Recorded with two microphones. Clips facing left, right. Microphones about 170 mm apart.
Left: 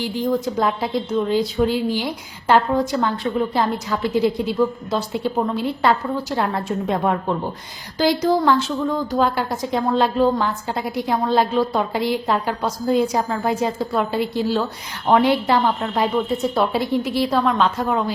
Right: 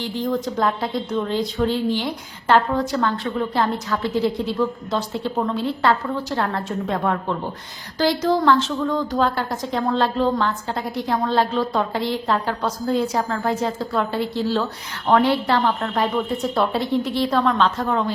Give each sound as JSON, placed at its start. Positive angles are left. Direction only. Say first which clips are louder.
{"t": 0.0, "sound": "speech", "louder": "left 2 dB", "side_deg": 10}